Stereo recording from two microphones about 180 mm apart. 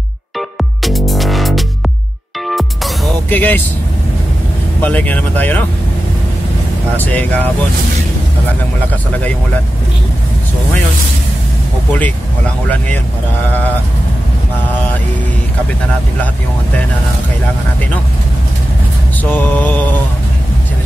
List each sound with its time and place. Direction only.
0.8 s music: centre (ahead or behind)
4.8 s speech: 10° left (ahead or behind)
7.0 s speech: 10° left (ahead or behind)
19.2 s speech: 10° left (ahead or behind)